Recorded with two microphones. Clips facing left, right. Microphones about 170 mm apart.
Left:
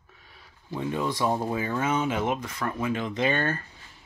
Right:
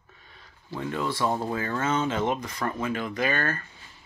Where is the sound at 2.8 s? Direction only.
20° left (ahead or behind).